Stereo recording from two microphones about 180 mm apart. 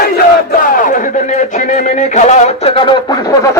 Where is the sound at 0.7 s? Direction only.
45° left (ahead or behind).